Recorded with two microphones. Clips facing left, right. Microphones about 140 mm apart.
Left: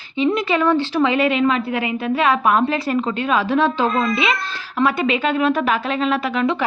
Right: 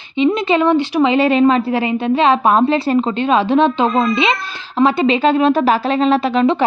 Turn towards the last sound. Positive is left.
turn(degrees=-30)  # may be behind; listen again after turning